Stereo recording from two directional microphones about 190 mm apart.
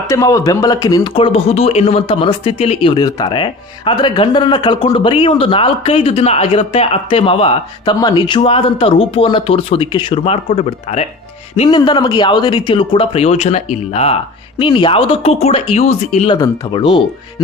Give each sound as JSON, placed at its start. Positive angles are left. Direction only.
{"t": 0.1, "sound": "a man's voice", "side_deg": 15}